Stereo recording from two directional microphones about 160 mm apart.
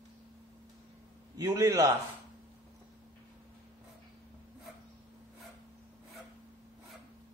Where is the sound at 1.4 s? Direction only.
20° right (ahead or behind).